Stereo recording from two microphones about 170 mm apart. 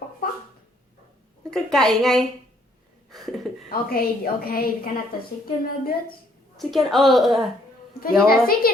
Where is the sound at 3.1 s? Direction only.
Centre (ahead or behind).